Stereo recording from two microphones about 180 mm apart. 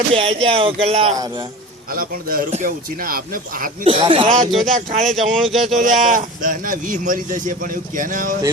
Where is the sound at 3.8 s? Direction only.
30° right (ahead or behind).